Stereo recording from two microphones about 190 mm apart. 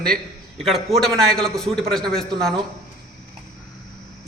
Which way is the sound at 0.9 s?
Centre (ahead or behind).